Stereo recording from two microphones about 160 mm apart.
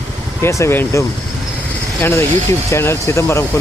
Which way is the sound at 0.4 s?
15° left (ahead or behind).